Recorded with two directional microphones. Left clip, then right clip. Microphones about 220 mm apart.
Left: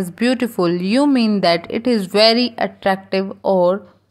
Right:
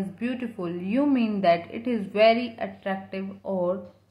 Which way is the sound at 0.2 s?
45° left (ahead or behind).